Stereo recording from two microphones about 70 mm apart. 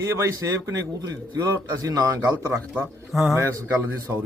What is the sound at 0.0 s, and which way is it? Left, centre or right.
A man's voice, right.